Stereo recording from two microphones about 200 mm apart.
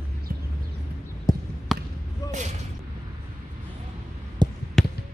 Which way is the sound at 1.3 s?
20° left (ahead or behind).